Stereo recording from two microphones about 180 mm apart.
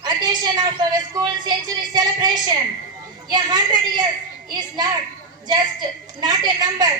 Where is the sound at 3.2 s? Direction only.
25° right (ahead or behind).